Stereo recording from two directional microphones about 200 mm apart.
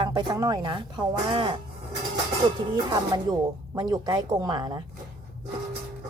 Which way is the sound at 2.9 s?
20° right (ahead or behind).